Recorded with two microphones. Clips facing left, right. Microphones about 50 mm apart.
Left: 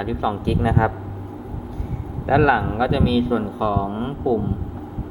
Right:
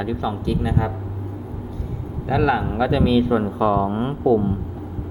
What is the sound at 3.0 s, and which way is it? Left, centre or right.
Speech, centre.